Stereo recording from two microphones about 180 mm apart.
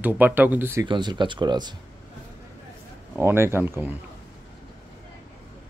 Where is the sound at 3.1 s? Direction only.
15° right (ahead or behind).